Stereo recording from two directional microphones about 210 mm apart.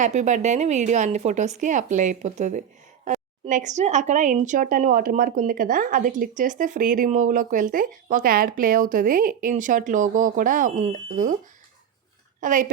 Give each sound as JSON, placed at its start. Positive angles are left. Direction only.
{"t": 0.0, "sound": "speech", "side_deg": -35}
{"t": 12.4, "sound": "speech", "side_deg": -40}